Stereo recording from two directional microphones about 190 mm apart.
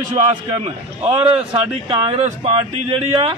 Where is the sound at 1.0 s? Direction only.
30° right (ahead or behind).